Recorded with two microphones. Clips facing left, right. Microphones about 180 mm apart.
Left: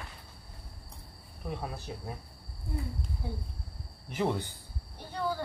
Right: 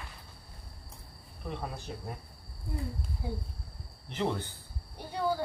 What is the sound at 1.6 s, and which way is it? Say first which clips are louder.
Speech: even; 5° left (ahead or behind).